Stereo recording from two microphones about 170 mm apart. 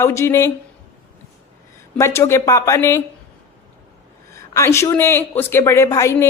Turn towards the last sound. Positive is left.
turn(degrees=15)  # may be behind; listen again after turning